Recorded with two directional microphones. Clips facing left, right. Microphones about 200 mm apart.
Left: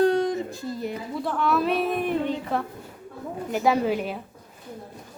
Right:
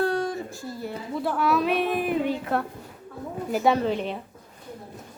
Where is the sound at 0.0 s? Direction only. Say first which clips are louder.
Left 4 dB; 20° left (ahead or behind).